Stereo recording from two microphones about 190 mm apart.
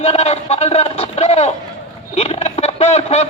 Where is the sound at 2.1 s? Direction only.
35° left (ahead or behind).